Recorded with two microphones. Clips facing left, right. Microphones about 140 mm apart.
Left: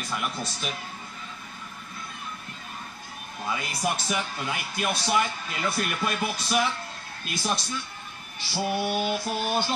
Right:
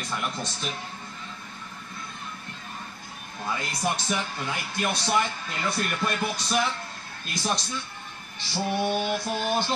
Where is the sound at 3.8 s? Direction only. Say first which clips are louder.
Even; 5° left (ahead or behind).